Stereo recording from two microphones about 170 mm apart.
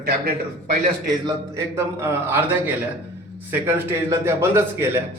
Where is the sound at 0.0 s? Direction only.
65° right (ahead or behind).